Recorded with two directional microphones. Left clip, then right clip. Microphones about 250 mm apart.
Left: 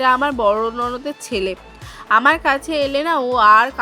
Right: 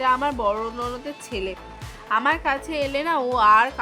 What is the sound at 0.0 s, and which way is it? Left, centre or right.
A woman's voice, centre.